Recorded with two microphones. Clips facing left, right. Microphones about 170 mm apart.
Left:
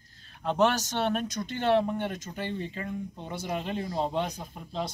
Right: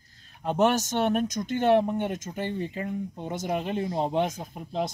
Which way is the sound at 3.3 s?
45° right (ahead or behind).